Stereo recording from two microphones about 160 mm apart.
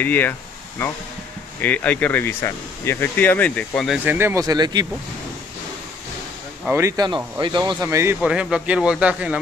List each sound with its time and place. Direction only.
0.0 s speech: 10° left (ahead or behind)
4.0 s speech: 10° right (ahead or behind)
6.6 s speech: 15° right (ahead or behind)
8.2 s speech: 5° right (ahead or behind)